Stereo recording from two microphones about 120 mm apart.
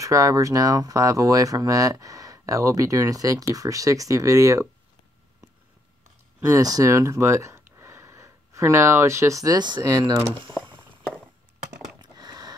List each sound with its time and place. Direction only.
0.0 s speech: 25° right (ahead or behind)
6.4 s speech: 30° right (ahead or behind)
12.0 s a sound: 35° right (ahead or behind)